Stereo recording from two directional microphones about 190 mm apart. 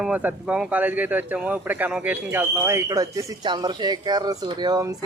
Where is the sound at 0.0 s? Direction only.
5° right (ahead or behind).